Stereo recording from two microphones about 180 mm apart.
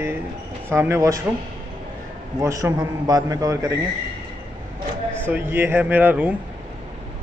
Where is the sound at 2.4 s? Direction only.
15° right (ahead or behind).